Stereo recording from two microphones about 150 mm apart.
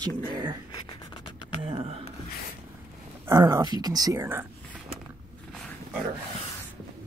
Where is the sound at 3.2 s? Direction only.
25° right (ahead or behind).